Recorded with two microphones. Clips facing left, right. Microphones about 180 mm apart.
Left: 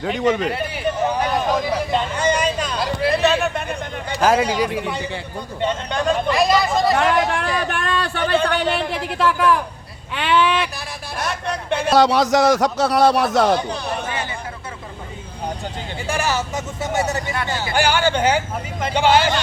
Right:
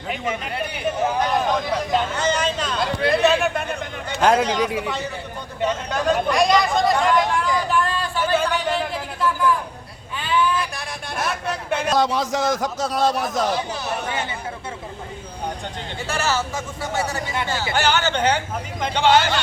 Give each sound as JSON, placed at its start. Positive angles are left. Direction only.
{"t": 0.2, "sound": "a man's voice", "side_deg": 70}
{"t": 0.5, "sound": "a man's voice", "side_deg": 0}
{"t": 5.5, "sound": "speech", "side_deg": -5}
{"t": 6.9, "sound": "a sound", "side_deg": 75}
{"t": 10.8, "sound": "a sound", "side_deg": 0}
{"t": 11.9, "sound": "a man's voice", "side_deg": 75}
{"t": 16.0, "sound": "speech", "side_deg": 15}
{"t": 17.7, "sound": "speech", "side_deg": 10}